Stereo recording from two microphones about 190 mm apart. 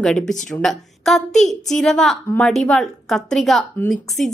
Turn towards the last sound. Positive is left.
turn(degrees=0)  # may be behind; listen again after turning